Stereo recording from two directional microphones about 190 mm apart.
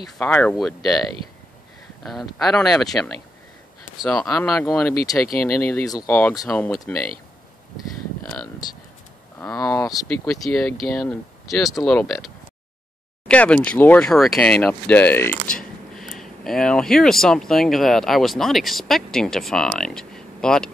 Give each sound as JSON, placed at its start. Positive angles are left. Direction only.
{"t": 0.2, "sound": "speech", "side_deg": 5}
{"t": 2.0, "sound": "speech", "side_deg": 0}
{"t": 9.4, "sound": "speech", "side_deg": 15}
{"t": 10.2, "sound": "speech", "side_deg": 0}
{"t": 13.3, "sound": "speech", "side_deg": 5}